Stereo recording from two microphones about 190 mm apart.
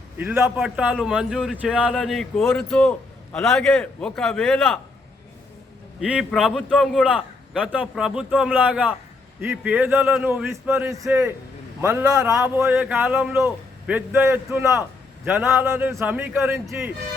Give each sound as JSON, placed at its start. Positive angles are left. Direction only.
{"t": 0.2, "sound": "a man's voice", "side_deg": -10}
{"t": 2.4, "sound": "a man's voice", "side_deg": 10}
{"t": 6.0, "sound": "a man's voice", "side_deg": 0}
{"t": 10.9, "sound": "a man's voice", "side_deg": -15}